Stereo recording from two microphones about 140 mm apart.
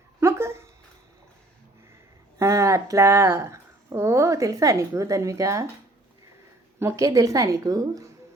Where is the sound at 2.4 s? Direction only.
20° right (ahead or behind).